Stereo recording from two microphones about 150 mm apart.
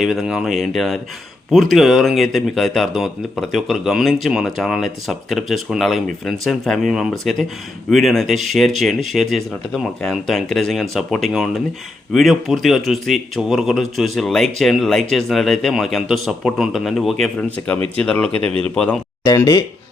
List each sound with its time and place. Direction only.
0.0 s speech: centre (ahead or behind)
19.2 s speech: 20° left (ahead or behind)